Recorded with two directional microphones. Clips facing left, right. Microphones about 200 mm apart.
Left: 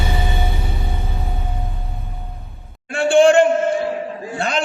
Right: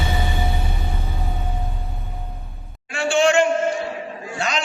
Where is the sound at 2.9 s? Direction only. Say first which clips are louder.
Left 6 dB; 55° left (ahead or behind).